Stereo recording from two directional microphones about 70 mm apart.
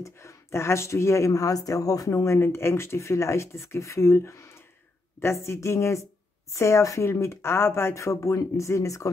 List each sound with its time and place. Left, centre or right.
0.0 s a woman's voice: left